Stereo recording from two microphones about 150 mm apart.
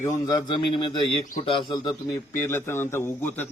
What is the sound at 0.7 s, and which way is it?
A man's voice, 35° left (ahead or behind).